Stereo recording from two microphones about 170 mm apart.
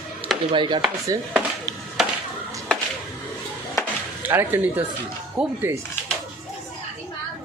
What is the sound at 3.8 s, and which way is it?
Chop, 20° left (ahead or behind).